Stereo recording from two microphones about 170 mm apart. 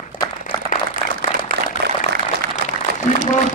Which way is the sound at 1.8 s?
80° right.